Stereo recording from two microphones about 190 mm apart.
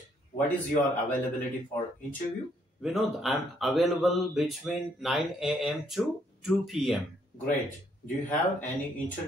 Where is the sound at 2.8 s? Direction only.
Centre (ahead or behind).